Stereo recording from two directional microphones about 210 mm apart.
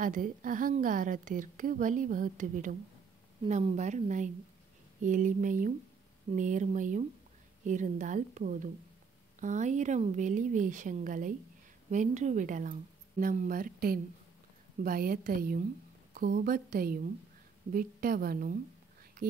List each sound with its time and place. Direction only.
0.0 s a woman's voice: 40° right (ahead or behind)